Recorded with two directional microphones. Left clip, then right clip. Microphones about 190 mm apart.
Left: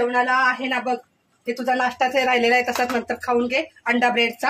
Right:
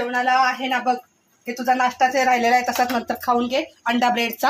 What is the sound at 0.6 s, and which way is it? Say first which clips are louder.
Speech: right 2 dB; centre (ahead or behind).